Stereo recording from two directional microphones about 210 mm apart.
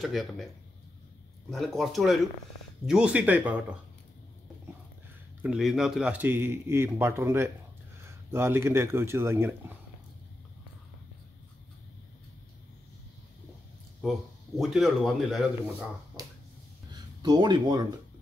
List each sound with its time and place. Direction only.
0.0 s speech: centre (ahead or behind)
1.5 s a man's voice: centre (ahead or behind)
5.4 s a man's voice: centre (ahead or behind)
14.6 s speech: centre (ahead or behind)
16.9 s speech: 20° right (ahead or behind)